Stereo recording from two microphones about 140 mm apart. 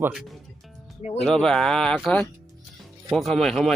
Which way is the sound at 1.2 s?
5° left (ahead or behind).